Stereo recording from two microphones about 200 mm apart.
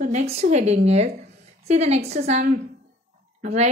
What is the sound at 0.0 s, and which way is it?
A woman's voice, 35° right (ahead or behind).